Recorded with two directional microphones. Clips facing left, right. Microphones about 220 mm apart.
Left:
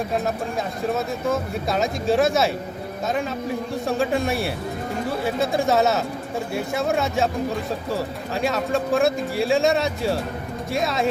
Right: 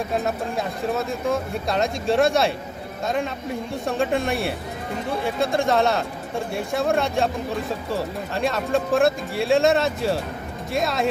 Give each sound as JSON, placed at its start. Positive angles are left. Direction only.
{"t": 0.9, "sound": "speech", "side_deg": 0}
{"t": 3.8, "sound": "speech", "side_deg": 0}